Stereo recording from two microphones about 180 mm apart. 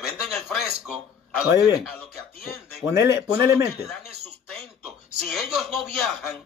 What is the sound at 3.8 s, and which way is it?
Speech, centre (ahead or behind).